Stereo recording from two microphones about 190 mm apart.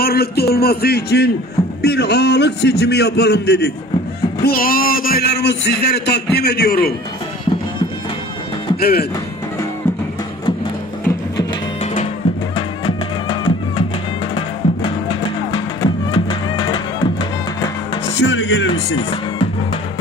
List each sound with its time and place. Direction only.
0.0 s a man's voice: 55° left (ahead or behind)
8.7 s speech: 50° left (ahead or behind)
11.8 s music: 35° left (ahead or behind)
18.1 s music: 70° left (ahead or behind)
18.9 s speech: 30° left (ahead or behind)